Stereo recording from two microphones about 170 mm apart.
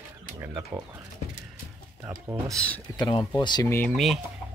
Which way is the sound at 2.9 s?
25° left (ahead or behind).